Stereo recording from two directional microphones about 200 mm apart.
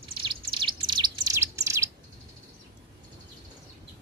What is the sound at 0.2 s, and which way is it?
Bird, 25° right (ahead or behind).